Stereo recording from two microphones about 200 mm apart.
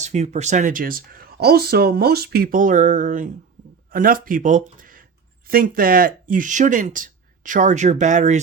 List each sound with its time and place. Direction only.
0.0 s speech: 35° right (ahead or behind)